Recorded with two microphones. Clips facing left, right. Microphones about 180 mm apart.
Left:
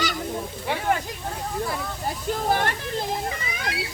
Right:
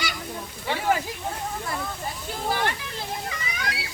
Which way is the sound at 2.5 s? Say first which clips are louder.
Left 1 dB; 45° left (ahead or behind).